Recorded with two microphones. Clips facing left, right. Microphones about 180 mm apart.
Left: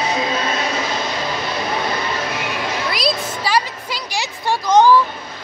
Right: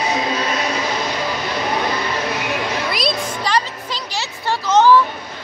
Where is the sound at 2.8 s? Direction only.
Centre (ahead or behind).